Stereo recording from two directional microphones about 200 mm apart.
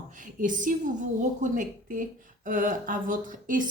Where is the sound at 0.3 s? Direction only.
40° right (ahead or behind).